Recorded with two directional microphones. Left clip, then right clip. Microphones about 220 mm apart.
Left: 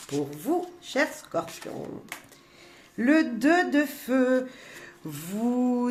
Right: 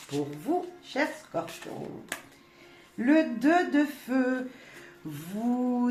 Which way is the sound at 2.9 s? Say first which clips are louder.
Left 1 dB; 50° left (ahead or behind).